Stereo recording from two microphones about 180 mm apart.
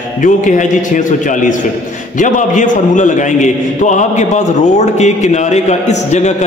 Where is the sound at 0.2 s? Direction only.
45° left (ahead or behind).